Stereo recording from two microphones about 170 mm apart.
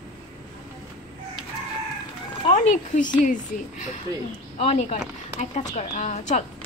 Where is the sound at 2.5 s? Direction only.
50° left (ahead or behind).